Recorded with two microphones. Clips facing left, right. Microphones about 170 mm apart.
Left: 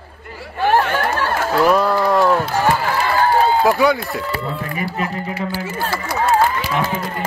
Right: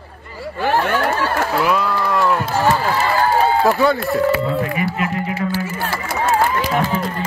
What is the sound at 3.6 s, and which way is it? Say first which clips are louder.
Run: even; 15° left (ahead or behind).